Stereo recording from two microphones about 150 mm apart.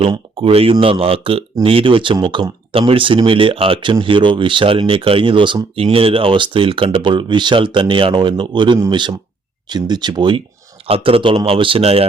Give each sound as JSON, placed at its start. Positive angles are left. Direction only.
{"t": 0.3, "sound": "speech", "side_deg": -40}